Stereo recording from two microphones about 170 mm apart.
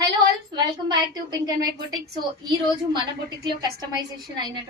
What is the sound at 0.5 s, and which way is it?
A woman's voice, 25° right (ahead or behind).